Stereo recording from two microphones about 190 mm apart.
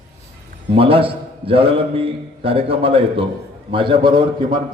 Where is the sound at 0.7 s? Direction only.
30° right (ahead or behind).